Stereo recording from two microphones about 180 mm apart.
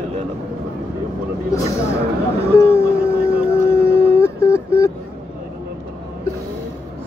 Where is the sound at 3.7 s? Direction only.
15° left (ahead or behind).